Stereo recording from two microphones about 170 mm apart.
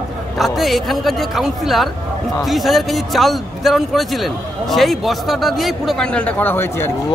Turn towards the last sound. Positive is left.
turn(degrees=10)  # may be behind; listen again after turning